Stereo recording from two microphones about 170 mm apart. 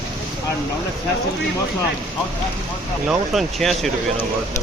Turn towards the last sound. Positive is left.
turn(degrees=0)  # may be behind; listen again after turning